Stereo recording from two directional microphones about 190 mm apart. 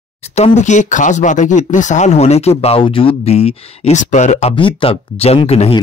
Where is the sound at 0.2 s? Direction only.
35° left (ahead or behind).